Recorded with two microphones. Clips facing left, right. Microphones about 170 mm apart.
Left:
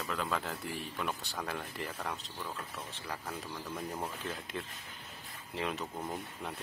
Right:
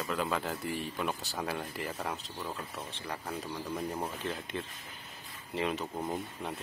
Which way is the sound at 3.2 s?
15° right (ahead or behind).